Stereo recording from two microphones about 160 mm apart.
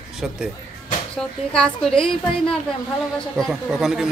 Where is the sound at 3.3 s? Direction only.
Centre (ahead or behind).